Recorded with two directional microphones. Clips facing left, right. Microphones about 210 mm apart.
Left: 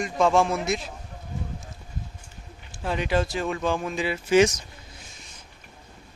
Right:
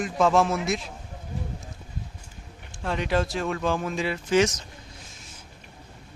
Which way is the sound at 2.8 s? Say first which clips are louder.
Left 1 dB; centre (ahead or behind).